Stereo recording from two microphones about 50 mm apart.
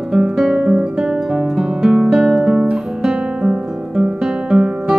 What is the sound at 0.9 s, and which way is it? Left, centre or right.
Guitar, centre.